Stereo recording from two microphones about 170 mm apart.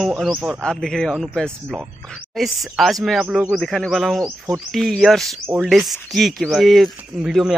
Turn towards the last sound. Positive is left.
turn(degrees=0)  # may be behind; listen again after turning